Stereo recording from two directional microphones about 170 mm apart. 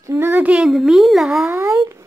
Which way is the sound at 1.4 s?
15° right (ahead or behind).